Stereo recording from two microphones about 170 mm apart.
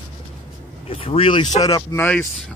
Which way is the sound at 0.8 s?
35° left (ahead or behind).